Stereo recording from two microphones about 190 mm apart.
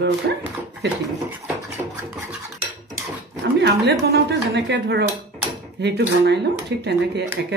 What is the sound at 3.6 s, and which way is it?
Speech, 65° right (ahead or behind).